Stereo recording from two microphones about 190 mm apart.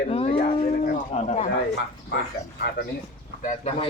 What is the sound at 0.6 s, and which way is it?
Livestock, 40° left (ahead or behind).